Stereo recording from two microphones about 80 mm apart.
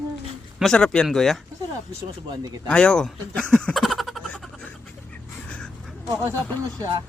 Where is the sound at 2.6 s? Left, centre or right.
Centre.